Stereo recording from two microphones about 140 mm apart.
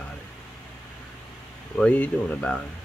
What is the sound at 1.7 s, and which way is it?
Speech, 10° left (ahead or behind).